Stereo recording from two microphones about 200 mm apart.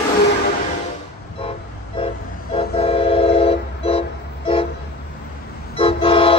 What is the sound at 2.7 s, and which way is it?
Train, 30° left (ahead or behind).